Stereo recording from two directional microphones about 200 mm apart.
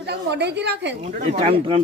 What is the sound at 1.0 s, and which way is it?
Speech, 35° right (ahead or behind).